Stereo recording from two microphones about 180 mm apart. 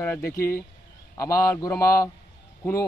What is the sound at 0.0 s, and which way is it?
A man's voice, 10° left (ahead or behind).